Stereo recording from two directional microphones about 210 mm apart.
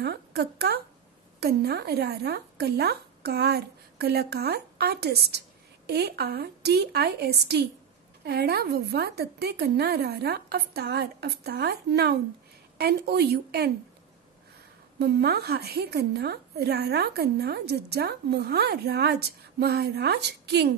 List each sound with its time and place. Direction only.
0.0 s a woman's voice: 50° right (ahead or behind)
15.0 s a woman's voice: 50° right (ahead or behind)